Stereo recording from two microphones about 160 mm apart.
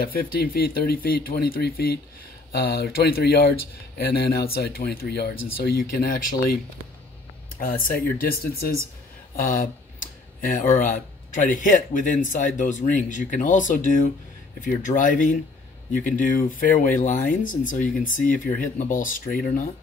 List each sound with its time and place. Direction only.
0.0 s speech: 70° left (ahead or behind)
7.5 s speech: 60° left (ahead or behind)